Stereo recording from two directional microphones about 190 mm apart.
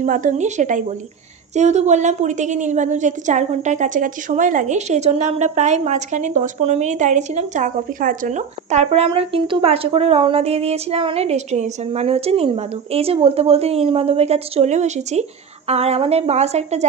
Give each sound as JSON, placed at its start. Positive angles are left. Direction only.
{"t": 0.0, "sound": "a woman's voice", "side_deg": -45}